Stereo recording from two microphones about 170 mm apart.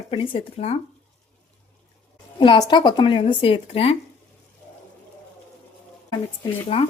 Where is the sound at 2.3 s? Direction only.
30° left (ahead or behind).